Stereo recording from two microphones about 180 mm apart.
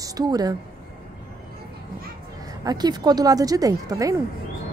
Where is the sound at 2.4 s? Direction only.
20° right (ahead or behind).